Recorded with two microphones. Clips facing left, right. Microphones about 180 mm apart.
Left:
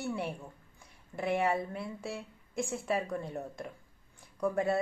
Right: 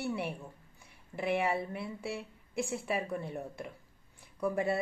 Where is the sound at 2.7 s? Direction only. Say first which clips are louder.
Left 3 dB; 10° right (ahead or behind).